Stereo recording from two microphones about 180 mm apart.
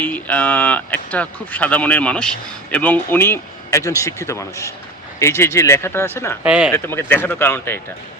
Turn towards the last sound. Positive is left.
turn(degrees=10)  # may be behind; listen again after turning